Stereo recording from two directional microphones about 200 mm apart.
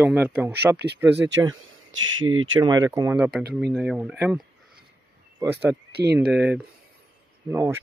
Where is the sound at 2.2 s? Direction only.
80° right.